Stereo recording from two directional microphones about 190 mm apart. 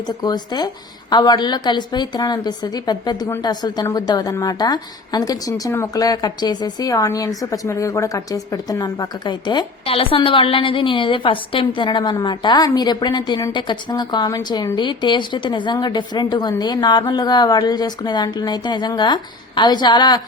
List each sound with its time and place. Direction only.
0.2 s speech: 20° left (ahead or behind)